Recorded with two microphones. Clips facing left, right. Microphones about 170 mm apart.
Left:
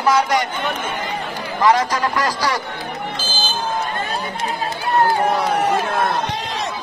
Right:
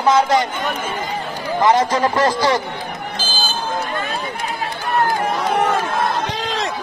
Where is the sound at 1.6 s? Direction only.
25° right (ahead or behind).